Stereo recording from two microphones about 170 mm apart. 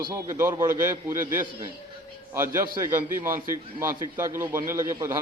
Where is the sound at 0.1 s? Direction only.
15° right (ahead or behind).